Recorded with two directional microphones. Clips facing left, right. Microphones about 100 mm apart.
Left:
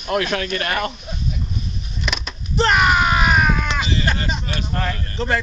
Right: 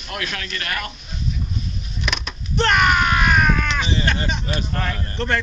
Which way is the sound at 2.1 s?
Centre (ahead or behind).